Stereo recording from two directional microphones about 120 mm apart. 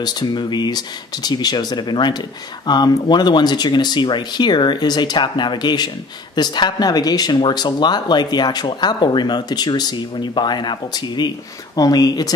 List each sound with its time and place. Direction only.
0.0 s speech: 35° left (ahead or behind)